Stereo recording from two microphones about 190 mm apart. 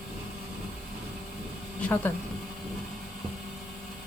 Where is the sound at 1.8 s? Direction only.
10° left (ahead or behind).